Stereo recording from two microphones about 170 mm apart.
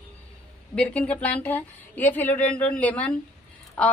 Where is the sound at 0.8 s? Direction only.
10° left (ahead or behind).